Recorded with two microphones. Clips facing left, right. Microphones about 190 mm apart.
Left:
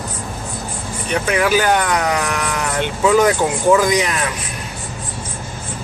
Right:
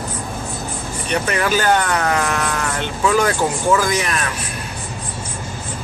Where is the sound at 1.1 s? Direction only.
10° left (ahead or behind).